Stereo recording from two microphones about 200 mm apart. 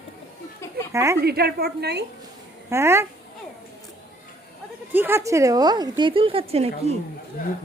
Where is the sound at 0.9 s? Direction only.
15° right (ahead or behind).